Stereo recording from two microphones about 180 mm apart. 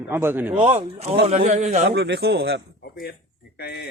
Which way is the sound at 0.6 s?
35° right (ahead or behind).